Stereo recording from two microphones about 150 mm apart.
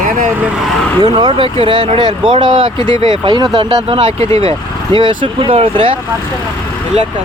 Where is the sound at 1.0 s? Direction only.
30° right (ahead or behind).